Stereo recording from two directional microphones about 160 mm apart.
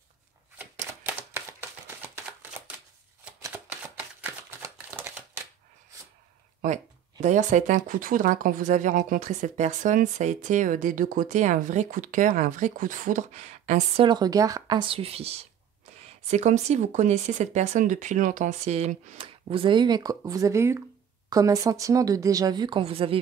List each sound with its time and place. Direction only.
0.6 s typewriter: 10° right (ahead or behind)
4.2 s a sound: 15° right (ahead or behind)
6.6 s speech: 50° right (ahead or behind)
14.0 s speech: 25° right (ahead or behind); by 19.1 s 45° right (ahead or behind)
19.1 s speech: 35° right (ahead or behind)